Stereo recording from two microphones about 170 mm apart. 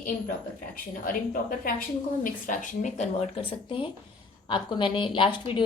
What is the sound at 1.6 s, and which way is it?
A woman's voice, 55° left (ahead or behind).